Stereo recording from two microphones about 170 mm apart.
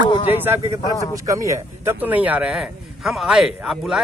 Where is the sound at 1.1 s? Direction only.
20° right (ahead or behind).